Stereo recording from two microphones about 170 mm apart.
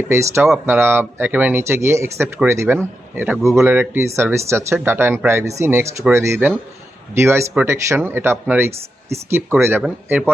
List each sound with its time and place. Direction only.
0.1 s speech: 15° right (ahead or behind)